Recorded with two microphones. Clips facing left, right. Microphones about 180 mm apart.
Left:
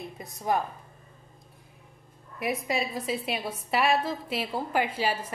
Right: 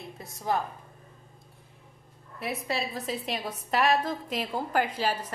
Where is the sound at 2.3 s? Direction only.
10° left (ahead or behind).